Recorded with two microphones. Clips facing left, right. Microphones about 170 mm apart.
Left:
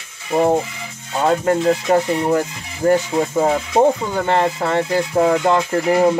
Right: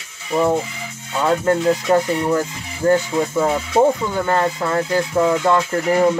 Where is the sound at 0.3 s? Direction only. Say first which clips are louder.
Left 2 dB; 35° left (ahead or behind).